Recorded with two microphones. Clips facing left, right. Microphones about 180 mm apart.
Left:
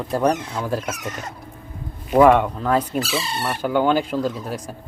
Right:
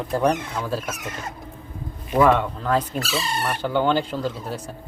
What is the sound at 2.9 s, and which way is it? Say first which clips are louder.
A man's voice: left 2 dB; 5° left (ahead or behind).